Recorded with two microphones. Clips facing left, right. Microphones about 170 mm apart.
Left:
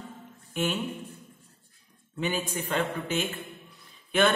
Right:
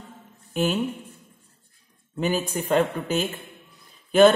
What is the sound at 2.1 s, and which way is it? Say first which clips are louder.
A man's voice: right 5 dB; 40° right (ahead or behind).